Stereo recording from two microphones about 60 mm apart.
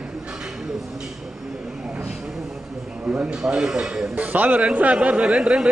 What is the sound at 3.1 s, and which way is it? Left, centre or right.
A man's voice, centre.